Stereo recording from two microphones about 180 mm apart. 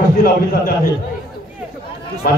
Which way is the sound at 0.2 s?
55° left (ahead or behind).